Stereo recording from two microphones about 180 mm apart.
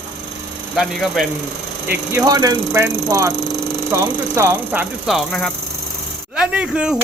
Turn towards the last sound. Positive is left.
turn(degrees=-5)  # may be behind; listen again after turning